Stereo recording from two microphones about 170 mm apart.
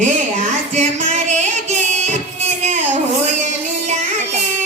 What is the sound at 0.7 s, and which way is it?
Music, 40° right (ahead or behind).